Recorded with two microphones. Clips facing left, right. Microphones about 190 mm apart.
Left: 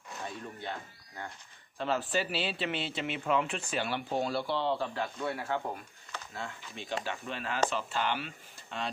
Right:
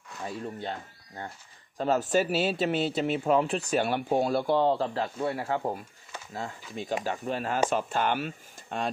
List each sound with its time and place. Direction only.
0.3 s speech: 40° right (ahead or behind)